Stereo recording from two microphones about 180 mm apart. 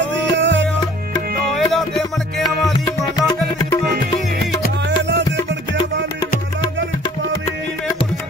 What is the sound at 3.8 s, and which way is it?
Music, 55° right (ahead or behind).